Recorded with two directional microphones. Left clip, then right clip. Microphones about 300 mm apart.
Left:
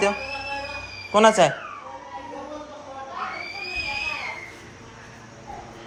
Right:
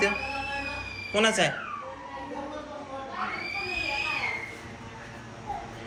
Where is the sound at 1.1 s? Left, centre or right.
Left.